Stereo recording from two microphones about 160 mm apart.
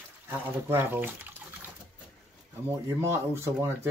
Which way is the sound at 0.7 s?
15° right (ahead or behind).